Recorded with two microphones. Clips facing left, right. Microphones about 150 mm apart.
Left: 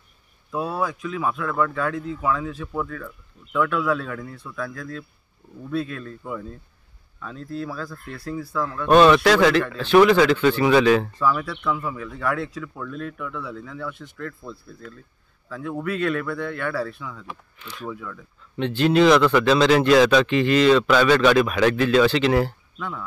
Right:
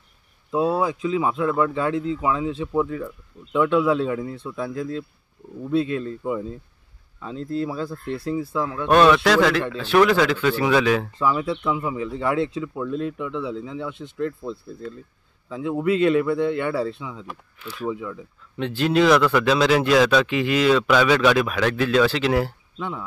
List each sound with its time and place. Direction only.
0.5 s speech: 25° right (ahead or behind)
8.8 s a man's voice: centre (ahead or behind)
11.1 s speech: 20° right (ahead or behind)
17.3 s speech: 5° right (ahead or behind)
17.9 s speech: 20° right (ahead or behind)
18.6 s a man's voice: centre (ahead or behind)
22.8 s speech: 25° right (ahead or behind)